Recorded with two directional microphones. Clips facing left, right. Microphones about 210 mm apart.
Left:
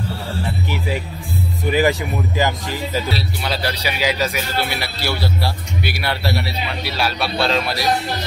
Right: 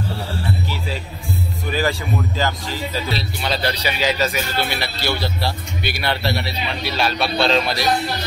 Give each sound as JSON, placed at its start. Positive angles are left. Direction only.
{"t": 0.7, "sound": "music", "side_deg": 15}
{"t": 1.7, "sound": "speech", "side_deg": 15}